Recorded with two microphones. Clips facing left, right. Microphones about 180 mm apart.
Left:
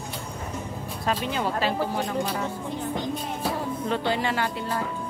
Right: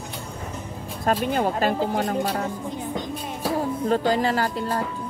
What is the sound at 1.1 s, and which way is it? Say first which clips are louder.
Speech: right 5 dB; 50° right (ahead or behind).